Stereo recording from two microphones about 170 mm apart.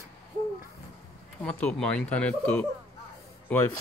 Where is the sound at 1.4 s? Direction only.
10° left (ahead or behind).